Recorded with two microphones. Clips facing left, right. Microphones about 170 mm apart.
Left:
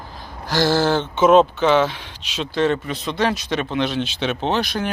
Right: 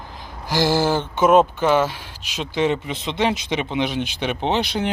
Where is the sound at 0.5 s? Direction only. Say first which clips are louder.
Left 1 dB; 10° right (ahead or behind).